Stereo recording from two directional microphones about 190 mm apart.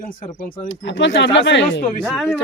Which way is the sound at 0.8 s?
70° left (ahead or behind).